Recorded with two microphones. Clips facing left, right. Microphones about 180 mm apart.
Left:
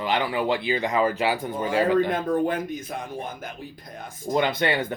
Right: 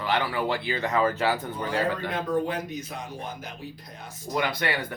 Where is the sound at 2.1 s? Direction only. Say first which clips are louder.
Left 3 dB; 50° left (ahead or behind).